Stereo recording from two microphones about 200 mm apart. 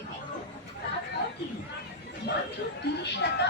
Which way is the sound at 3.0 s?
60° left (ahead or behind).